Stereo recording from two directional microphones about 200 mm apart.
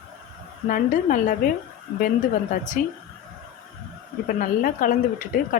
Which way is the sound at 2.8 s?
40° left (ahead or behind).